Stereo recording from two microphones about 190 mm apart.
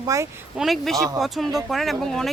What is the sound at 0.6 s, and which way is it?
Speech, centre (ahead or behind).